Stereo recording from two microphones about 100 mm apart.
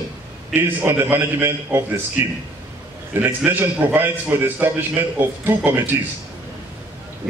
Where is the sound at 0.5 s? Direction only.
20° right (ahead or behind).